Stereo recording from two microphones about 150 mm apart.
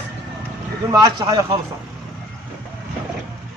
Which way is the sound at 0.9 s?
25° right (ahead or behind).